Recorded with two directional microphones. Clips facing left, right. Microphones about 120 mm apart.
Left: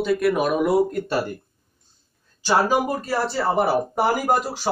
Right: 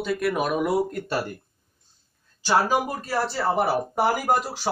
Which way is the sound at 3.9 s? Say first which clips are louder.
Left 2 dB; 20° left (ahead or behind).